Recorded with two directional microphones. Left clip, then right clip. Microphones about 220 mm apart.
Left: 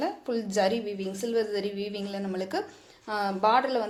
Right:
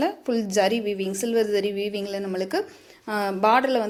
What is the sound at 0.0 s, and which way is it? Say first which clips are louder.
A woman's voice: right 5 dB; 30° right (ahead or behind).